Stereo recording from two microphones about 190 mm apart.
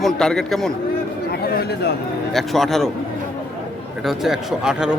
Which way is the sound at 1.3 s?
55° left (ahead or behind).